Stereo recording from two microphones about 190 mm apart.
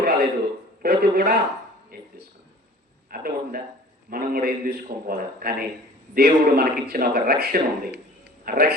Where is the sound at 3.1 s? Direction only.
50° right (ahead or behind).